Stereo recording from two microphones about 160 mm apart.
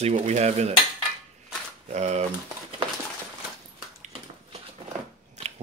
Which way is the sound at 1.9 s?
45° right (ahead or behind).